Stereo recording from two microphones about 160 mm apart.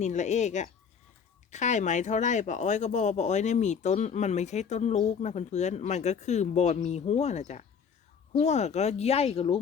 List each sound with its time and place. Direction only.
0.0 s speech: 45° left (ahead or behind)